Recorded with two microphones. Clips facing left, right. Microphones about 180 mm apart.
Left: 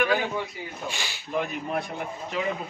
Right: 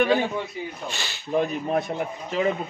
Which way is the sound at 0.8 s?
10° left (ahead or behind).